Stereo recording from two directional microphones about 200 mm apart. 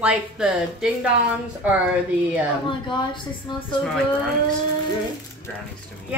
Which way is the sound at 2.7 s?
25° left (ahead or behind).